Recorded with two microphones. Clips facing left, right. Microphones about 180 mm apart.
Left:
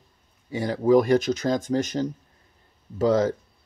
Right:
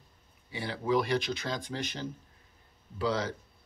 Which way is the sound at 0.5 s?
45° left (ahead or behind).